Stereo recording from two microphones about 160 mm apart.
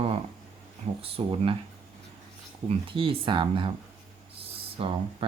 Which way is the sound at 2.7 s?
35° right (ahead or behind).